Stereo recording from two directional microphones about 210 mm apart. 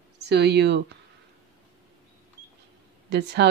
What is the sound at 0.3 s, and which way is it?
Speech, 55° right (ahead or behind).